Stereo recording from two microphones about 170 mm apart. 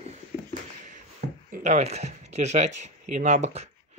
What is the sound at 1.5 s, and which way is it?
Speech, 45° right (ahead or behind).